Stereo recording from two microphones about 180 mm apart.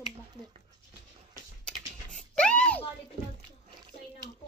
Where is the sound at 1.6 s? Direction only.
5° left (ahead or behind).